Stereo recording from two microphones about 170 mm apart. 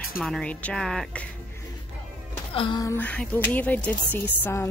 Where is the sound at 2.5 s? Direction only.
25° left (ahead or behind).